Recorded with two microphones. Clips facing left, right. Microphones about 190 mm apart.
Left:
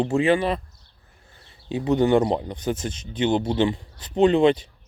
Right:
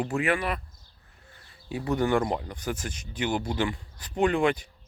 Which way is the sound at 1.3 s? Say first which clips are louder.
Left 6 dB; 25° left (ahead or behind).